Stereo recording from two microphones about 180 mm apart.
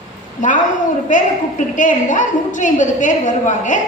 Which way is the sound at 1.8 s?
45° left (ahead or behind).